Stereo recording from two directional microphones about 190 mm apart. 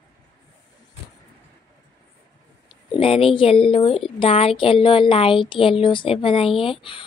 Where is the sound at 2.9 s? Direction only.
30° left (ahead or behind).